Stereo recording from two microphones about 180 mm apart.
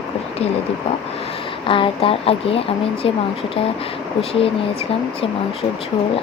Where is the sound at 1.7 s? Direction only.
30° left (ahead or behind).